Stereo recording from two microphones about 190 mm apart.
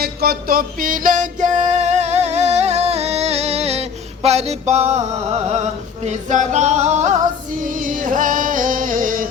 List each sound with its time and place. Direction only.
0.0 s music: 50° right (ahead or behind); by 5.0 s 35° right (ahead or behind)
6.1 s music: 40° right (ahead or behind)